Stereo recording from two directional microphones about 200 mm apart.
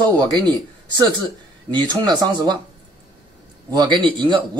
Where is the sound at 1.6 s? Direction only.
20° right (ahead or behind).